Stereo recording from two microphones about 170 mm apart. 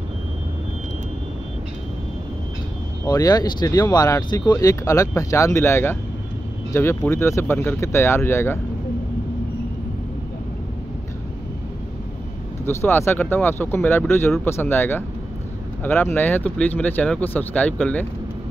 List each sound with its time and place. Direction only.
3.1 s speech: 25° left (ahead or behind)
12.6 s speech: 15° left (ahead or behind)